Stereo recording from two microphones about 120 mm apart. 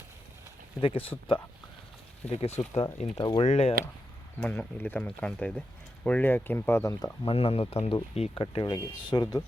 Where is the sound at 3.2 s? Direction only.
40° left (ahead or behind).